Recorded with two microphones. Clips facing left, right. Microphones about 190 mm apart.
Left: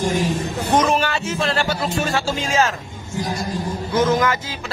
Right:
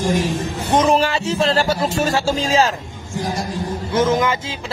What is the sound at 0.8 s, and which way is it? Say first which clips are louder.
Speech: right 5 dB; 30° right (ahead or behind).